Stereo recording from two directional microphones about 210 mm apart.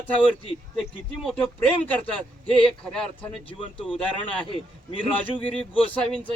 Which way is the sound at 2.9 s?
5° left (ahead or behind).